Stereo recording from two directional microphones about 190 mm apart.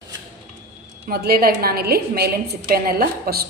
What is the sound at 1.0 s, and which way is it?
A woman's voice, 55° right (ahead or behind).